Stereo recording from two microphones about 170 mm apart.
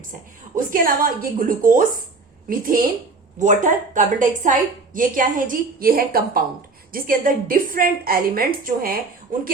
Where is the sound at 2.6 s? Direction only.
55° right (ahead or behind).